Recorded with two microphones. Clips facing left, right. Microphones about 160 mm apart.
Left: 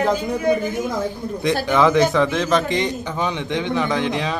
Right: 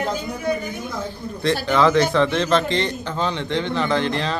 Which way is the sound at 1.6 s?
15° left (ahead or behind).